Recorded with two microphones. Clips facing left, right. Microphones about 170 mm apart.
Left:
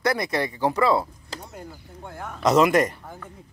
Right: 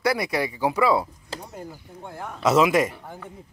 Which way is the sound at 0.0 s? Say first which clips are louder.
Even; 10° right (ahead or behind).